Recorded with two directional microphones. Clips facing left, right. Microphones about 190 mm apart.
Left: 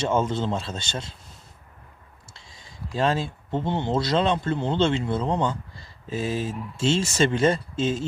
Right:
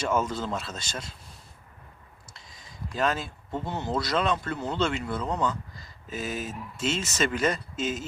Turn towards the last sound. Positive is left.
turn(degrees=30)  # may be behind; listen again after turning